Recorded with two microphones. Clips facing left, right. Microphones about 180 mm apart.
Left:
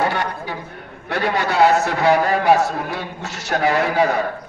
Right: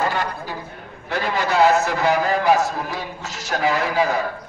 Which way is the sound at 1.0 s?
65° left (ahead or behind).